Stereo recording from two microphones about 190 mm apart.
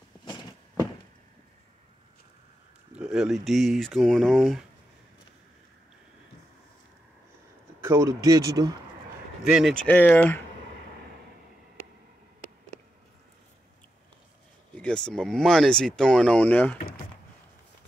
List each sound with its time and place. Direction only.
0.2 s a sound: 25° left (ahead or behind)
2.9 s speech: 5° right (ahead or behind)
7.8 s speech: 15° right (ahead or behind)
9.4 s speech: centre (ahead or behind)
14.8 s speech: 5° left (ahead or behind)